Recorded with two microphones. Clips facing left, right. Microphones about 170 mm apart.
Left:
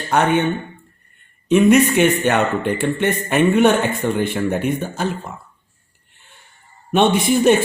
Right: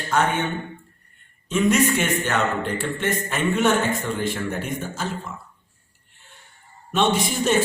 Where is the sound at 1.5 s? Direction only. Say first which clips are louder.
Left 7 dB; 60° left (ahead or behind).